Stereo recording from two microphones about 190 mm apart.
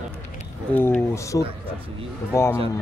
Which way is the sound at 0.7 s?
10° left (ahead or behind).